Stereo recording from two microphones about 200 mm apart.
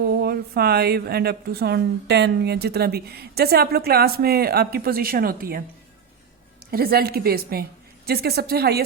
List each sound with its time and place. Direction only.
0.0 s a woman's voice: 50° right (ahead or behind)
6.7 s a woman's voice: 50° right (ahead or behind)